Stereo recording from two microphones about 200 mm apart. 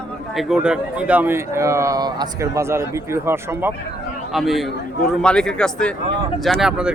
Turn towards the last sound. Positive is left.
turn(degrees=-5)  # may be behind; listen again after turning